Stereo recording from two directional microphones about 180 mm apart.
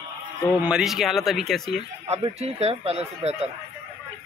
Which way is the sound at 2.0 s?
35° right (ahead or behind).